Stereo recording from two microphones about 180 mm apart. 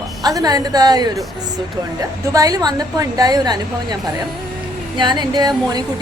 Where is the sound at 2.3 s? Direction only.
20° right (ahead or behind).